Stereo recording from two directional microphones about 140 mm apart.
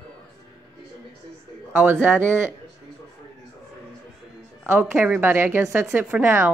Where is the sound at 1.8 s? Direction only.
10° right (ahead or behind).